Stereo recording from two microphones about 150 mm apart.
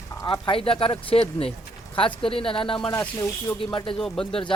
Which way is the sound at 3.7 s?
30° left (ahead or behind).